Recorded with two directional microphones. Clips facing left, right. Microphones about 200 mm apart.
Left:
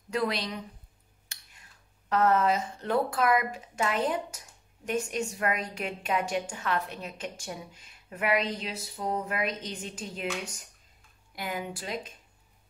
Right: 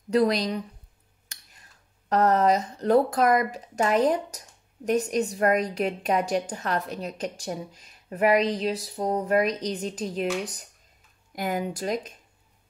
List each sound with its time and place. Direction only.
0.1 s a woman's voice: 40° right (ahead or behind)